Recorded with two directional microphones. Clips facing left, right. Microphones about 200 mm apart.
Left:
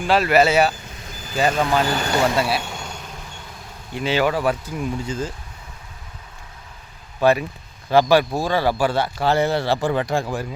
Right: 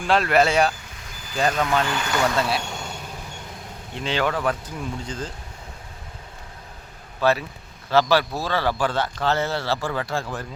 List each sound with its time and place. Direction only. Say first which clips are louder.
0.1 s speech: left 2 dB; 5° left (ahead or behind)
1.8 s speech: left 3 dB; 35° left (ahead or behind)
2.3 s vehicle: left 2 dB; 5° left (ahead or behind)
3.9 s a man's voice: left 4 dB; 5° left (ahead or behind)
7.2 s a man's voice: left 4 dB; 15° left (ahead or behind)